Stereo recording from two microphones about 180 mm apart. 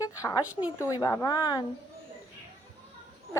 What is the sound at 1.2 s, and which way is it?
Speech, 25° left (ahead or behind).